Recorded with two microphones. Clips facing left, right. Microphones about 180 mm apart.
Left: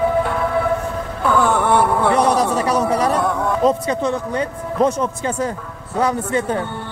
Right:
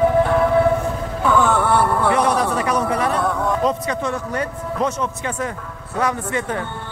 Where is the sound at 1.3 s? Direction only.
10° left (ahead or behind).